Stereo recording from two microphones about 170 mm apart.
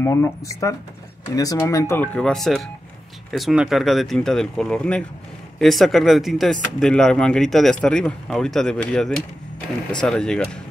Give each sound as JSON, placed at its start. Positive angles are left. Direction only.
{"t": 0.0, "sound": "speech", "side_deg": 15}